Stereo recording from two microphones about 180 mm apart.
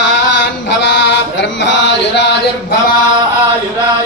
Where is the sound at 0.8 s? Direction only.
75° left (ahead or behind).